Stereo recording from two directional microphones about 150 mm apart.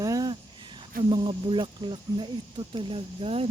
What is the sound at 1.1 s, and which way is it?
Speech, 35° right (ahead or behind).